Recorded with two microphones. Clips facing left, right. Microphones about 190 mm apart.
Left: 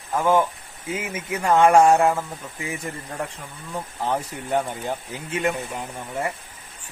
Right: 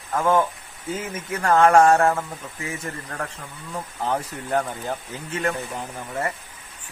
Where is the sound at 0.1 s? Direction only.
10° left (ahead or behind).